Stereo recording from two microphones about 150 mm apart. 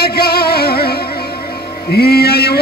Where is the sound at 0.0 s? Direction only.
90° left.